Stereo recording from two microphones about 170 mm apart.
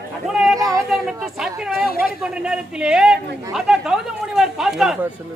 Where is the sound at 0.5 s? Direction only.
20° right (ahead or behind).